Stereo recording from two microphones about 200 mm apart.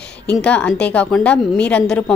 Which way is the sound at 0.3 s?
5° left (ahead or behind).